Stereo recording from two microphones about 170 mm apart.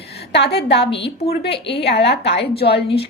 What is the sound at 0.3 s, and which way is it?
A woman's voice, 85° left.